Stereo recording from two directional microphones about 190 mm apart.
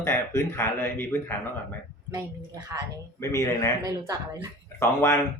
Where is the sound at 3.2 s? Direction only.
15° left (ahead or behind).